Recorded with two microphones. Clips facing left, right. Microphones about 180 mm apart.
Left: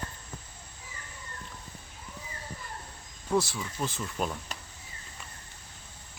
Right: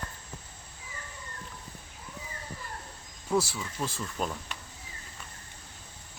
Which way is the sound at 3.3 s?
5° right (ahead or behind).